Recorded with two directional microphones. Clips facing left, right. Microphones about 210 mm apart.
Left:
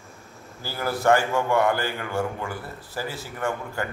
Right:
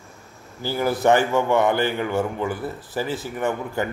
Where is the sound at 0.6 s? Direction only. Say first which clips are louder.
Right 4 dB; 20° right (ahead or behind).